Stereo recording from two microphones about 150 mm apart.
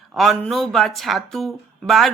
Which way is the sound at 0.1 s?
Centre (ahead or behind).